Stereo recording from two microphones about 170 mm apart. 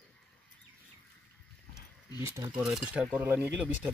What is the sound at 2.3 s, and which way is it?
Speech, 25° right (ahead or behind).